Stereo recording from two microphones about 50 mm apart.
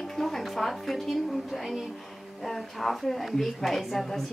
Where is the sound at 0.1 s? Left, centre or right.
Centre.